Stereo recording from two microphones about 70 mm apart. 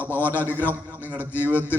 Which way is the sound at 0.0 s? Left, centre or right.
Left.